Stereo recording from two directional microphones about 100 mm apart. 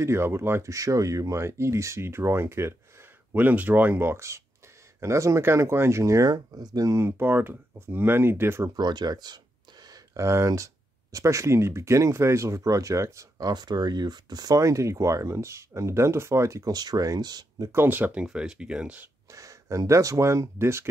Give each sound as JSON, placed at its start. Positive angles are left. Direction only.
{"t": 0.0, "sound": "speech", "side_deg": -25}
{"t": 8.6, "sound": "speech", "side_deg": -45}
{"t": 9.8, "sound": "speech", "side_deg": -30}
{"t": 17.6, "sound": "speech", "side_deg": -20}
{"t": 19.3, "sound": "speech", "side_deg": -35}